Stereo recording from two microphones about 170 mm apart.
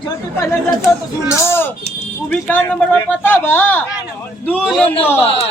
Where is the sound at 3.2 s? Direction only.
10° left (ahead or behind).